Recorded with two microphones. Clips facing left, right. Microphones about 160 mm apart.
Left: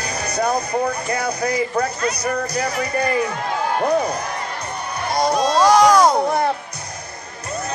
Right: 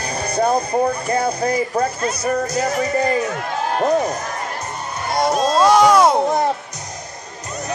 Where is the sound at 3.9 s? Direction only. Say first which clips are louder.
Right 1 dB; 45° right (ahead or behind).